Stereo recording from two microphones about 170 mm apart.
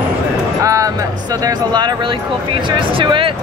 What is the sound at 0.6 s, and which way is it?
Speech, 20° right (ahead or behind).